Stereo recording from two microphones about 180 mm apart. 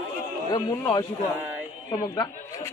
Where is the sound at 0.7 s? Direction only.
15° left (ahead or behind).